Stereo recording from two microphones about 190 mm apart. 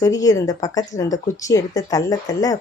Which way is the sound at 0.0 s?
20° left (ahead or behind).